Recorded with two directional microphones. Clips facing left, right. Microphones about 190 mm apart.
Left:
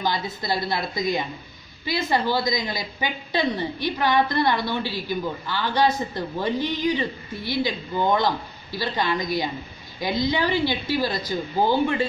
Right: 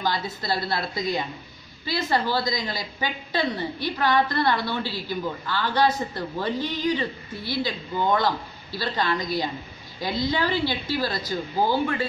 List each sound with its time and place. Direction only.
0.0 s a woman's voice: 15° left (ahead or behind)